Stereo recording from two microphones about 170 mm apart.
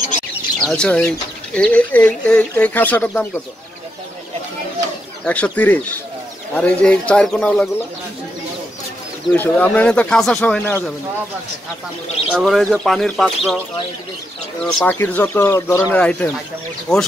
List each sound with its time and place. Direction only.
0.6 s speech: 5° left (ahead or behind)
5.2 s speech: 10° left (ahead or behind)
9.3 s speech: 10° left (ahead or behind)
12.3 s speech: centre (ahead or behind)
14.6 s speech: 5° left (ahead or behind)